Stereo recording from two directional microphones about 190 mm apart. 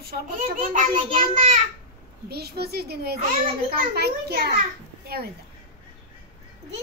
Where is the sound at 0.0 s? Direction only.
55° right (ahead or behind).